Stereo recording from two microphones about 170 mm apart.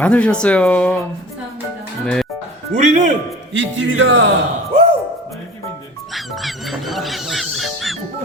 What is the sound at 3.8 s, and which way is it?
Speech, 90° right.